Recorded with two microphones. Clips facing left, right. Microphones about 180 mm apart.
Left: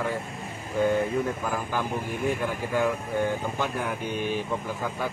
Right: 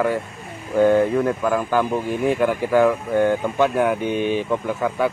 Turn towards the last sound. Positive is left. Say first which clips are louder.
# right 8 dB
turn(degrees=-70)  # may be behind; listen again after turning